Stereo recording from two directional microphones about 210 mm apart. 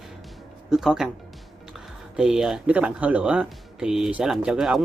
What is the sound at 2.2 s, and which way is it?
Speech, 5° right (ahead or behind).